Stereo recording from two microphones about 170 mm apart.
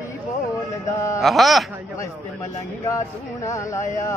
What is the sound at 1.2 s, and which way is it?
Speech, centre (ahead or behind).